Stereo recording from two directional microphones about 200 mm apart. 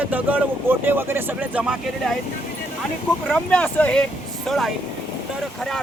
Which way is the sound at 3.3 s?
5° left (ahead or behind).